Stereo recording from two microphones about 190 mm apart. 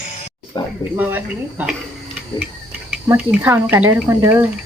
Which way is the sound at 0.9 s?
10° right (ahead or behind).